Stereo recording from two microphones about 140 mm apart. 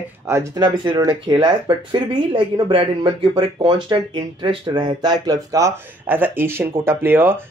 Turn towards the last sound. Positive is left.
turn(degrees=-15)  # may be behind; listen again after turning